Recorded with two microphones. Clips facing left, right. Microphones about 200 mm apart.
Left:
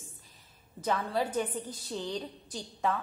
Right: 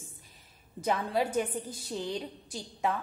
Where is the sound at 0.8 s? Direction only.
15° right (ahead or behind).